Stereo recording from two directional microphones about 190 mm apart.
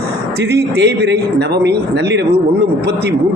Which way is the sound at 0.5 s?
60° right (ahead or behind).